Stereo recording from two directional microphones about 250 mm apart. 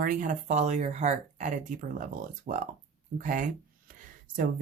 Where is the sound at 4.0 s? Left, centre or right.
Right.